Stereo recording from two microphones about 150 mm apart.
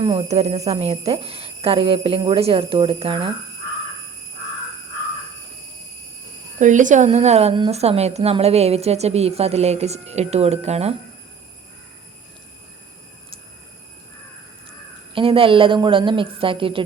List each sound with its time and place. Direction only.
0.2 s speech: 45° right (ahead or behind)
6.6 s a woman's voice: 55° right (ahead or behind)
15.1 s speech: 35° right (ahead or behind)